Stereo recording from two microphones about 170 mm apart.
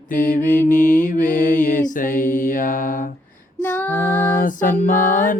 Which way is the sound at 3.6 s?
10° left (ahead or behind).